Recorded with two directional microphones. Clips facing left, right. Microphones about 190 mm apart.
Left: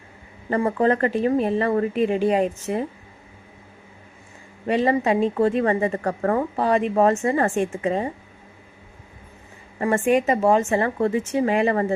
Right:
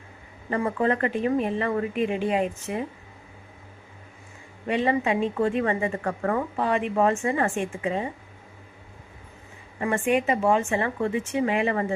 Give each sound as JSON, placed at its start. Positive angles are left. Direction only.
{"t": 0.5, "sound": "a woman's voice", "side_deg": 35}
{"t": 4.7, "sound": "a woman's voice", "side_deg": 40}
{"t": 9.8, "sound": "a woman's voice", "side_deg": 40}